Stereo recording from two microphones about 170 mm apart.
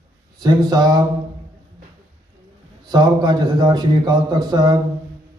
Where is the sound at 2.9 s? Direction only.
25° right (ahead or behind).